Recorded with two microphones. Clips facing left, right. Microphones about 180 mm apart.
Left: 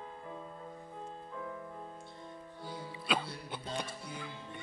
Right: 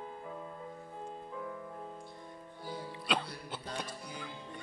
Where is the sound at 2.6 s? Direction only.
5° left (ahead or behind).